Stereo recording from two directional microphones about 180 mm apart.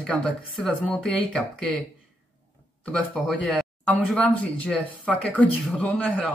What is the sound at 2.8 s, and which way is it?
Speech, 5° left (ahead or behind).